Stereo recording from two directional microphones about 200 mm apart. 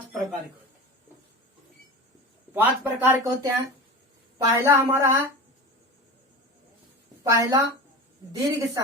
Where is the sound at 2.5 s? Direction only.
10° right (ahead or behind).